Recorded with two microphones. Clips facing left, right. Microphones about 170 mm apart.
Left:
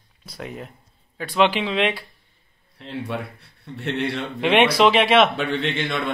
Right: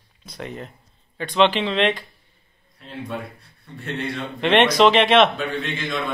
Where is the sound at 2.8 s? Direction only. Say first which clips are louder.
Left 2 dB; 70° left (ahead or behind).